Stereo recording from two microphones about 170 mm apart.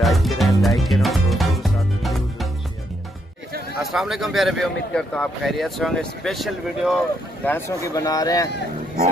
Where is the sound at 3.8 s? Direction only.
Centre (ahead or behind).